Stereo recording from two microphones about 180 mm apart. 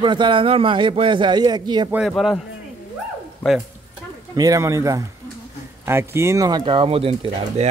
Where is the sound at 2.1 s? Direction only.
Centre (ahead or behind).